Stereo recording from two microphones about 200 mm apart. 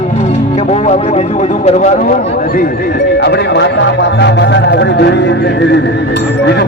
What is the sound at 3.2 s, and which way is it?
Speech, 55° left (ahead or behind).